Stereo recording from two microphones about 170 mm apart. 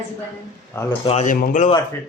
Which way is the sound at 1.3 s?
50° left (ahead or behind).